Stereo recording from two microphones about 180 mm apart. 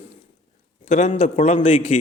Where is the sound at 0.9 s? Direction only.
35° left (ahead or behind).